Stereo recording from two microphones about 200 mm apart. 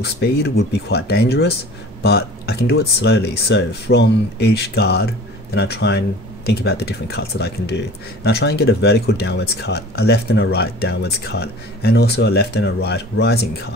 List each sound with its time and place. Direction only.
0.0 s speech: 55° left (ahead or behind)